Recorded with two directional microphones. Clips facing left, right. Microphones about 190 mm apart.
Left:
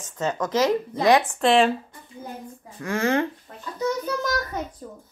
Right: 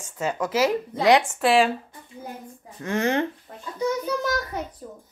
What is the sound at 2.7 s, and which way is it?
Speech, 20° right (ahead or behind).